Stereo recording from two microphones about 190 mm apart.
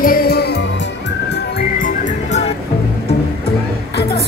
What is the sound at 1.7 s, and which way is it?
Music, 45° left (ahead or behind).